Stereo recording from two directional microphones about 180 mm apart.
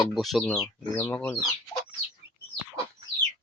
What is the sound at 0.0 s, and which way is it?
Speech, centre (ahead or behind).